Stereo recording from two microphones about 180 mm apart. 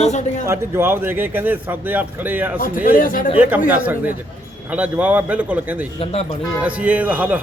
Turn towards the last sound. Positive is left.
turn(degrees=-10)  # may be behind; listen again after turning